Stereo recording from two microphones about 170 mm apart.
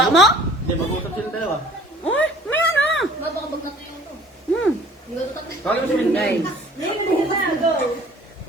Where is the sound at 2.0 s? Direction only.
10° left (ahead or behind).